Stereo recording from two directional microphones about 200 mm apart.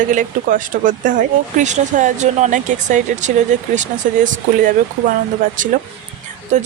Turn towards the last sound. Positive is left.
turn(degrees=-35)  # may be behind; listen again after turning